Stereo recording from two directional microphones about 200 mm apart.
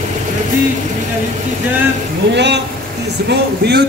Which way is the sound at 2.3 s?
60° right (ahead or behind).